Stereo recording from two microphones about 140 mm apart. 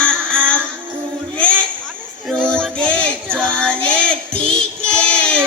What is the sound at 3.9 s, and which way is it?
Child singing, 5° left (ahead or behind).